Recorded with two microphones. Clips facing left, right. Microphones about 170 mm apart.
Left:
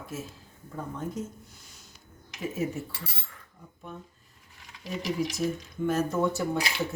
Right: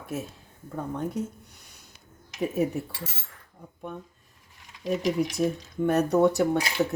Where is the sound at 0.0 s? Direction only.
60° right (ahead or behind).